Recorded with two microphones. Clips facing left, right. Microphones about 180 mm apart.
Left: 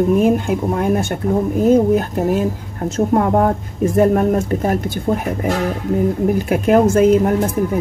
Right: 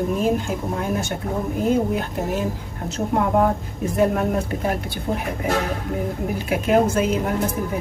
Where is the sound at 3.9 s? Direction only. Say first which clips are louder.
Left 5 dB; 45° left (ahead or behind).